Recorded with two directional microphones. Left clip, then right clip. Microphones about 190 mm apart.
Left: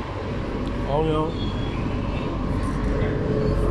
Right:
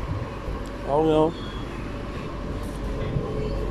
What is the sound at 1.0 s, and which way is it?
Speech, 30° right (ahead or behind).